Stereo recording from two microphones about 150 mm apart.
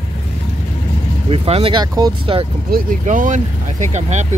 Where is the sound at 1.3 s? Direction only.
40° right (ahead or behind).